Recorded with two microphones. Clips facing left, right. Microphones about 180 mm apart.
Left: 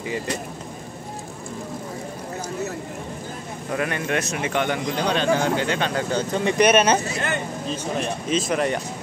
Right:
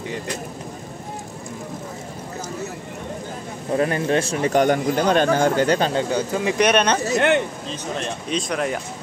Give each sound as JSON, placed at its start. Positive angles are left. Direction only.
{"t": 3.7, "sound": "speech", "side_deg": -30}
{"t": 6.1, "sound": "speech", "side_deg": -5}
{"t": 7.2, "sound": "speech", "side_deg": -70}
{"t": 7.7, "sound": "speech", "side_deg": 5}